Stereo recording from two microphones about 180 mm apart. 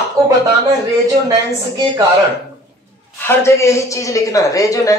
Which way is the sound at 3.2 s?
15° left (ahead or behind).